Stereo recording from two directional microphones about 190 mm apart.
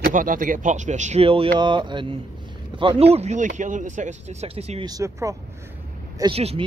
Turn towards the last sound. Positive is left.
turn(degrees=-30)  # may be behind; listen again after turning